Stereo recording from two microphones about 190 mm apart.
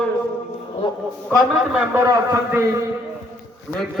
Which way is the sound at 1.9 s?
15° right (ahead or behind).